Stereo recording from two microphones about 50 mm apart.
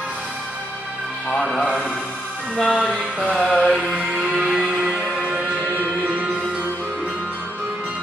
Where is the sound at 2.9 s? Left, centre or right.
Centre.